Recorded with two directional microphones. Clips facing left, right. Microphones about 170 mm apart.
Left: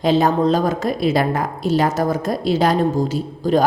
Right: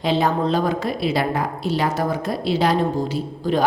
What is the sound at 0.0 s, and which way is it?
A woman's voice, 45° left (ahead or behind).